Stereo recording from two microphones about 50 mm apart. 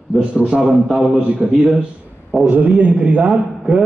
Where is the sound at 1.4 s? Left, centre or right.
Right.